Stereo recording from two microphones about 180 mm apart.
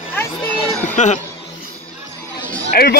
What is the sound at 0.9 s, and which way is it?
Speech, 40° left (ahead or behind).